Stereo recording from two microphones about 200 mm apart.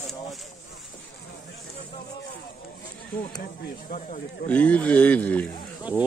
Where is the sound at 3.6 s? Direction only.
45° left (ahead or behind).